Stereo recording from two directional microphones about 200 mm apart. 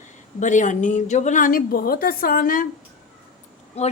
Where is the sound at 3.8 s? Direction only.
30° left (ahead or behind).